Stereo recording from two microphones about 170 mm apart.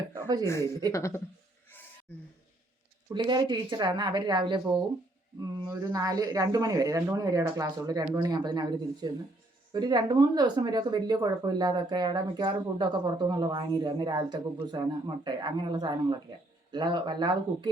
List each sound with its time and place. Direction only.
0.6 s speech: 20° right (ahead or behind)
0.9 s a woman's voice: 15° left (ahead or behind)
3.1 s speech: 25° right (ahead or behind)